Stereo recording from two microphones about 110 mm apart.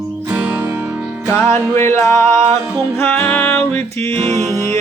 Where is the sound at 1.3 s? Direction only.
20° left (ahead or behind).